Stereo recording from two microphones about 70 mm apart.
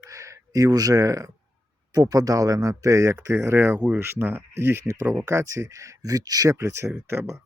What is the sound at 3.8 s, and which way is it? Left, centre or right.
Speech, right.